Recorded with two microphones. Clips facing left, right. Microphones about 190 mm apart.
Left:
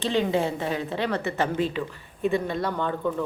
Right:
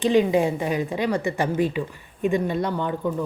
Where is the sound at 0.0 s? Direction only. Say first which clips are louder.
Right 5 dB; 15° right (ahead or behind).